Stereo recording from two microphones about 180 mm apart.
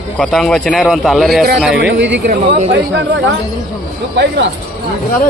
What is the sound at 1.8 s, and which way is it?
Speech, 85° right.